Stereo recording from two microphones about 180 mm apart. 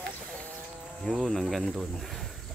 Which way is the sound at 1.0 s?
Centre (ahead or behind).